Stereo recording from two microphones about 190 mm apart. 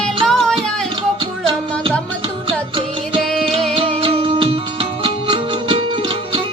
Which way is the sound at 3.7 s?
30° right (ahead or behind).